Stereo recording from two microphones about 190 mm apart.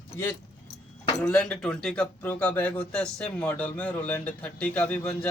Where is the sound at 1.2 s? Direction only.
5° left (ahead or behind).